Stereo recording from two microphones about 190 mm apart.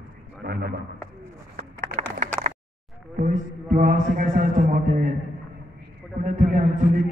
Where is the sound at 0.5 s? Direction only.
55° right (ahead or behind).